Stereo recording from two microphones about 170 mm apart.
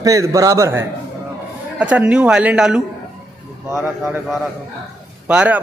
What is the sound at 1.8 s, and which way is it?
A woman's voice, 5° right (ahead or behind).